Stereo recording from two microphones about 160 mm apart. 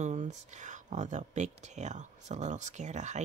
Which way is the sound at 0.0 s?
45° right (ahead or behind).